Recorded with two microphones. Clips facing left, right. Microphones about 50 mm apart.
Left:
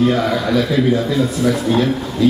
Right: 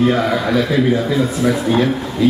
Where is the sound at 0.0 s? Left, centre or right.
Centre.